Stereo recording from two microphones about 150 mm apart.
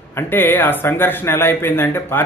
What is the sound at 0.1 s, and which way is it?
Speech, 15° left (ahead or behind).